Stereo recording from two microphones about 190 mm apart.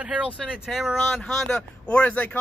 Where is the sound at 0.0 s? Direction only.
5° right (ahead or behind).